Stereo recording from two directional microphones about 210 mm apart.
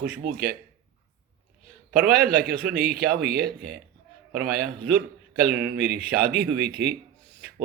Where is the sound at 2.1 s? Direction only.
45° right (ahead or behind).